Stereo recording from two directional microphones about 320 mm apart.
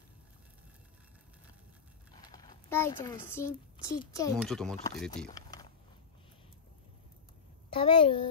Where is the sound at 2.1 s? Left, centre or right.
Centre.